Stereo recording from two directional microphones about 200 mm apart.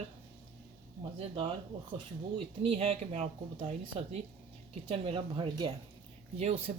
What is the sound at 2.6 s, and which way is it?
Speech, 30° right (ahead or behind).